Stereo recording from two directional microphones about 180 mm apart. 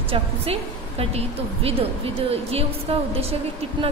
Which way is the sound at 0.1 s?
35° right (ahead or behind).